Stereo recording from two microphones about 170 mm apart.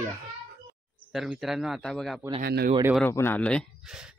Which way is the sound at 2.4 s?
65° right (ahead or behind).